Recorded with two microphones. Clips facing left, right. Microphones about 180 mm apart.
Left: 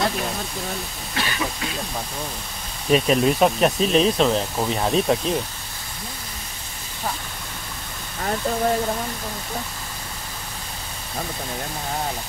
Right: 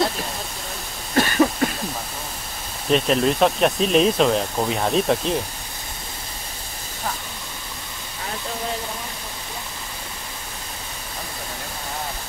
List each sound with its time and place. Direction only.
1.1 s cough: 45° right (ahead or behind)
2.9 s speech: 5° left (ahead or behind)